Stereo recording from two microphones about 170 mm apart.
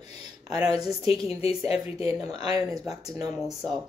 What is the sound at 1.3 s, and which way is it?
Speech, 35° left (ahead or behind).